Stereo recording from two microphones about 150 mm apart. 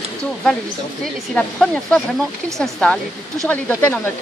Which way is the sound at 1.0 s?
5° left (ahead or behind).